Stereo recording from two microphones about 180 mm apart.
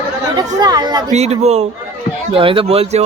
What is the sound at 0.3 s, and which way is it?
Speech, 20° right (ahead or behind).